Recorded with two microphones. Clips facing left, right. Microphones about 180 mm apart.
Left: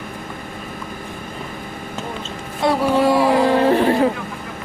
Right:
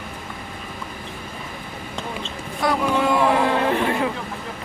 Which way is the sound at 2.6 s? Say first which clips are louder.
Left 4 dB; 30° left (ahead or behind).